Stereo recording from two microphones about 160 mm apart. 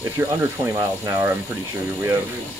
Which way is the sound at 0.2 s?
15° right (ahead or behind).